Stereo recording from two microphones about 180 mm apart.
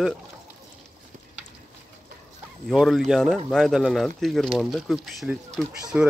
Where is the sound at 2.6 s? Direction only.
Centre (ahead or behind).